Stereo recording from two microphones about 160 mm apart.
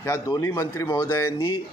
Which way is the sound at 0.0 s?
15° left (ahead or behind).